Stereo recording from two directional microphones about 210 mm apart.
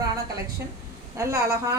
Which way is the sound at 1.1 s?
15° right (ahead or behind).